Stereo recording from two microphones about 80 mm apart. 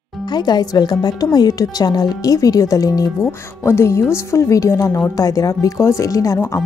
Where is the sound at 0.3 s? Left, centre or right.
Left.